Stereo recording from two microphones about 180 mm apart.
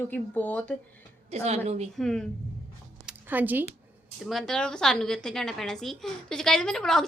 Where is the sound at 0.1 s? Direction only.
10° left (ahead or behind).